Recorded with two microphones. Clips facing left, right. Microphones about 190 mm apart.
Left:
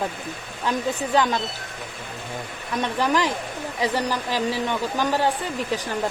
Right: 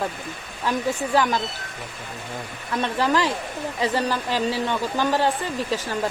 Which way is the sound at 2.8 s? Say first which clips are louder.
Even; 15° left (ahead or behind).